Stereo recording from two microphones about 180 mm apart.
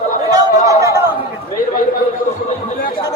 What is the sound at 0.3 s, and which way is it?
Chatter, 20° right (ahead or behind).